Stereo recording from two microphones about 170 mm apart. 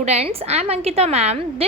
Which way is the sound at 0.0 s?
40° right (ahead or behind).